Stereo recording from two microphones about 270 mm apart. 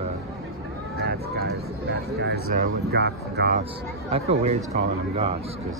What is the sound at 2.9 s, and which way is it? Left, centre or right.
Speech, right.